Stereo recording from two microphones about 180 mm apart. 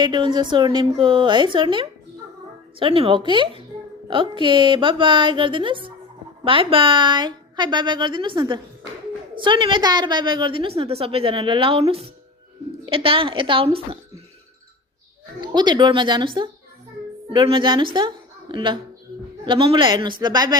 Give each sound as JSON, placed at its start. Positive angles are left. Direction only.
{"t": 0.0, "sound": "a woman's voice", "side_deg": -25}
{"t": 15.4, "sound": "a woman's voice", "side_deg": -25}